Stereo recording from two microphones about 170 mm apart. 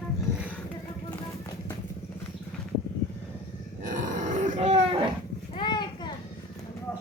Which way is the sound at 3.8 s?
50° right (ahead or behind).